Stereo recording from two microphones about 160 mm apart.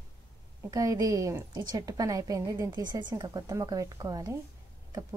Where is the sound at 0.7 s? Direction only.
20° right (ahead or behind).